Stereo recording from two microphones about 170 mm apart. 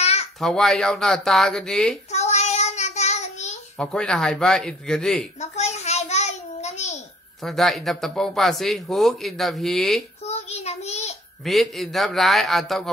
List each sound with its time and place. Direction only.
0.0 s babbling: 40° left (ahead or behind)
0.4 s speech: centre (ahead or behind)
2.1 s child singing: 40° left (ahead or behind)
3.7 s speech: 5° left (ahead or behind)
5.4 s a sound: 40° left (ahead or behind)
7.4 s speech: centre (ahead or behind)
10.2 s child singing: 40° left (ahead or behind)
11.4 s speech: centre (ahead or behind)